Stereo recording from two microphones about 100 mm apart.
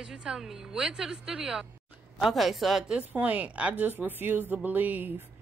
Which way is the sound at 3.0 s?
15° right (ahead or behind).